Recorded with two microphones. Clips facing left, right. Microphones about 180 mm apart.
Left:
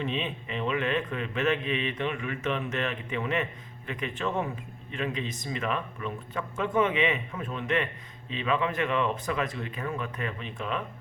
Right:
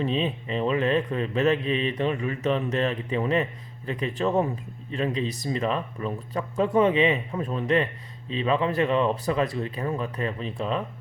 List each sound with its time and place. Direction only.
0.0 s a man's voice: 35° right (ahead or behind)